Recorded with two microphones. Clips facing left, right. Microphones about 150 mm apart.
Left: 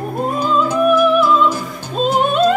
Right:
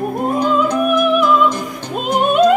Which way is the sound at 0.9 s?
15° right (ahead or behind).